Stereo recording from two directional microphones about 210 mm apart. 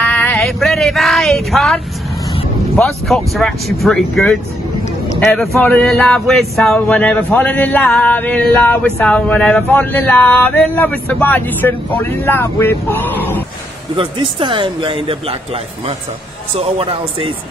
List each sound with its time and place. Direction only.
0.0 s speech: 10° left (ahead or behind)
13.9 s speech: 25° right (ahead or behind)